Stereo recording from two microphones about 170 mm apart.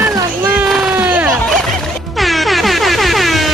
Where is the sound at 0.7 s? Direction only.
5° right (ahead or behind).